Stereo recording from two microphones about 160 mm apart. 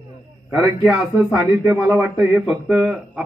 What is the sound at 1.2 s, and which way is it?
Speech, 5° right (ahead or behind).